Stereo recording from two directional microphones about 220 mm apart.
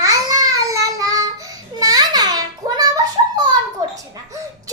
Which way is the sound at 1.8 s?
15° right (ahead or behind).